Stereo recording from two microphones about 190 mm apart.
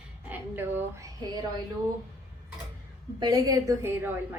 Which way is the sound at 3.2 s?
20° right (ahead or behind).